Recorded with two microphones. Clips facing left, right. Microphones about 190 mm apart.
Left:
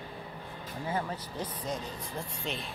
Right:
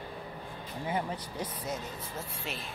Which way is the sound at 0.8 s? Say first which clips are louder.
Even; 15° right (ahead or behind).